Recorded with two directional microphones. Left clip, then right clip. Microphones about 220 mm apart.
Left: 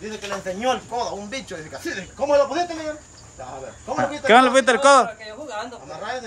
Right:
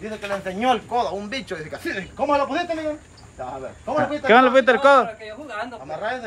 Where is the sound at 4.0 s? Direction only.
5° left (ahead or behind).